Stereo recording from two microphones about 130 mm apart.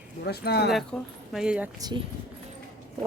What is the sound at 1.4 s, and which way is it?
Speech, 10° right (ahead or behind).